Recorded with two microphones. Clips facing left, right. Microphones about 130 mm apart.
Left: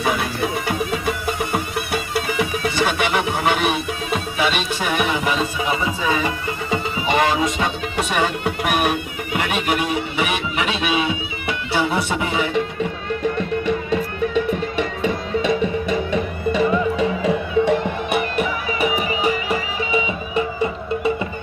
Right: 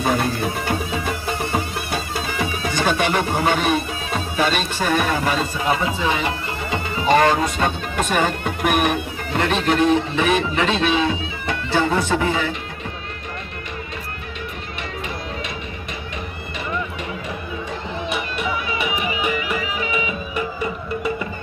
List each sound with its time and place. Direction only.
2.2 s music: 10° left (ahead or behind)
6.0 s music: 25° right (ahead or behind)
6.2 s speech: 20° left (ahead or behind)
18.1 s music: 45° left (ahead or behind); by 21.2 s 25° left (ahead or behind)